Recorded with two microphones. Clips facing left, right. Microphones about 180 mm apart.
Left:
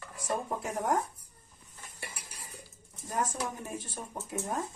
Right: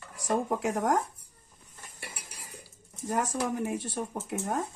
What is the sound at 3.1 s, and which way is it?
Speech, 85° right.